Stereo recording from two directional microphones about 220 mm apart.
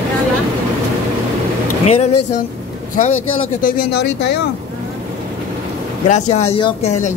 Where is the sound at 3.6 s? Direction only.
45° left (ahead or behind).